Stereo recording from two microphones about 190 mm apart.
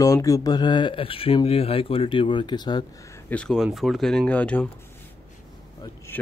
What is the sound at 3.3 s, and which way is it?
Speech, 5° left (ahead or behind).